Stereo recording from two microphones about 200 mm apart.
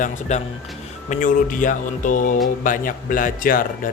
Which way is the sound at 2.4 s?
45° left (ahead or behind).